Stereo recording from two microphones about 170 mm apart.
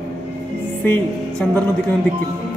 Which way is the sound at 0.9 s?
5° left (ahead or behind).